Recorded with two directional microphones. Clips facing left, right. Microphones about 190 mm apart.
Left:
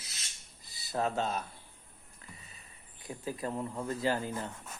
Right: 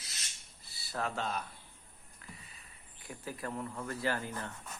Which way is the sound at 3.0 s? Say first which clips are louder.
Left 5 dB; 20° left (ahead or behind).